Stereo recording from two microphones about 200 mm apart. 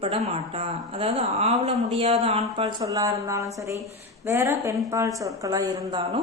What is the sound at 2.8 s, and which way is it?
A woman's voice, 15° right (ahead or behind).